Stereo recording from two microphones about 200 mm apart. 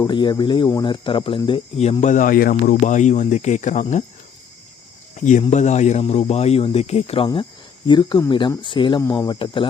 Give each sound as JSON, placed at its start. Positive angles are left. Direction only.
{"t": 0.0, "sound": "speech", "side_deg": 20}
{"t": 5.2, "sound": "speech", "side_deg": 35}